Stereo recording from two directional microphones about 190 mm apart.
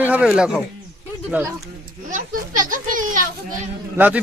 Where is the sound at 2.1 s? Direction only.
45° right (ahead or behind).